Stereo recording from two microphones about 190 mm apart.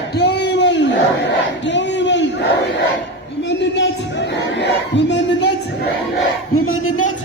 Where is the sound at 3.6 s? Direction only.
65° left (ahead or behind).